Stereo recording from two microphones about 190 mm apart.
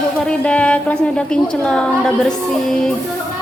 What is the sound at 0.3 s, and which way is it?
A woman's voice, 5° left (ahead or behind).